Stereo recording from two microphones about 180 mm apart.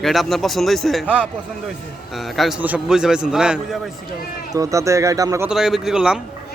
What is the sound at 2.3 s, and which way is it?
A man's voice, 5° right (ahead or behind).